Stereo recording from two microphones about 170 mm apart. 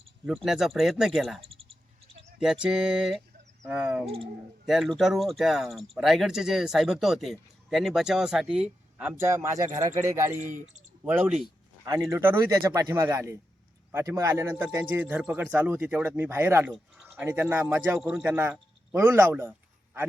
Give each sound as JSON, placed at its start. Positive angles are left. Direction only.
{"t": 0.4, "sound": "speech", "side_deg": 0}
{"t": 1.4, "sound": "a sound", "side_deg": -35}
{"t": 2.4, "sound": "speech", "side_deg": -5}
{"t": 4.0, "sound": "speech", "side_deg": -35}
{"t": 4.6, "sound": "speech", "side_deg": 0}
{"t": 16.7, "sound": "a sound", "side_deg": -5}
{"t": 17.2, "sound": "speech", "side_deg": -10}